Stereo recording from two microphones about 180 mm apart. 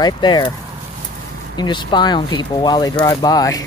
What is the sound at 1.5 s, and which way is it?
Speech, 25° left (ahead or behind).